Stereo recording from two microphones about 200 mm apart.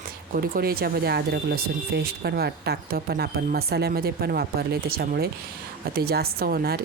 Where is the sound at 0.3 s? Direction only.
50° right (ahead or behind).